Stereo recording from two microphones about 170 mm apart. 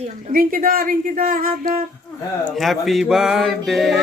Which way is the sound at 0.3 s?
55° right (ahead or behind).